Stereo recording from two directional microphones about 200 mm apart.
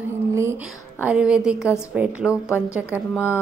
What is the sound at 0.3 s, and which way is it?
Whispering, 15° right (ahead or behind).